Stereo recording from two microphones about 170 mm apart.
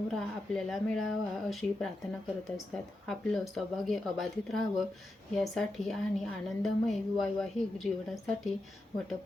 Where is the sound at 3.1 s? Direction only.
Centre (ahead or behind).